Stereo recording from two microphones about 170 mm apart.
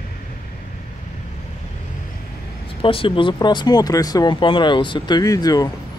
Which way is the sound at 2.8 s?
30° left (ahead or behind).